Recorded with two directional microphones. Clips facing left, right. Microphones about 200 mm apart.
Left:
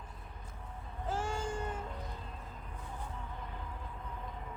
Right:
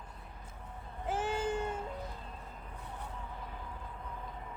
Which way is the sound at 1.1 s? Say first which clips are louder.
Right 3 dB; 20° right (ahead or behind).